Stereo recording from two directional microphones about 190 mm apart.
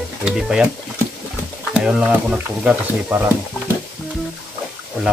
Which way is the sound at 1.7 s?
Centre (ahead or behind).